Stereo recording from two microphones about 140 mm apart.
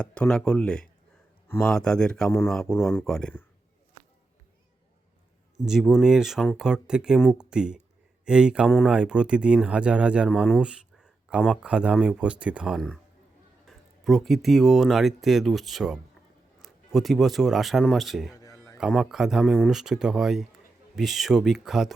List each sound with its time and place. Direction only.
0.0 s speech: 5° left (ahead or behind)
5.6 s speech: 5° right (ahead or behind)
18.3 s a sound: 25° left (ahead or behind)
18.8 s speech: centre (ahead or behind)